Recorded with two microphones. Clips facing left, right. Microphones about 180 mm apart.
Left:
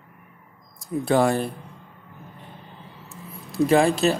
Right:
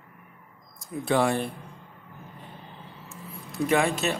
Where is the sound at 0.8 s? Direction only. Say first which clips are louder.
Left 4 dB; 40° left (ahead or behind).